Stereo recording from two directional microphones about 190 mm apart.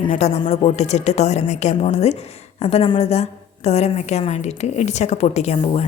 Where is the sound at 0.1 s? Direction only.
40° left (ahead or behind).